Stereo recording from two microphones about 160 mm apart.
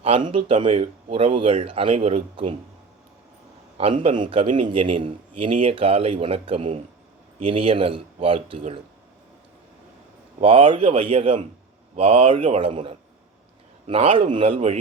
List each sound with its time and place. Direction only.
0.0 s a man's voice: 35° right (ahead or behind)
3.8 s a man's voice: 35° right (ahead or behind)
10.4 s a man's voice: 35° right (ahead or behind)